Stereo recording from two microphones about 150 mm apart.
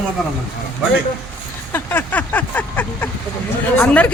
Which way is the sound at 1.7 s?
15° left (ahead or behind).